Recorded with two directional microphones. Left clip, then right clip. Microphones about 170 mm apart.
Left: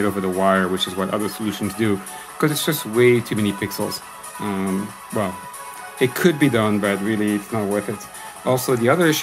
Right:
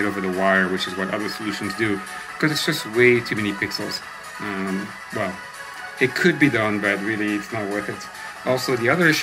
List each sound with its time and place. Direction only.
0.0 s speech: 20° left (ahead or behind)
5.9 s speech: 20° left (ahead or behind)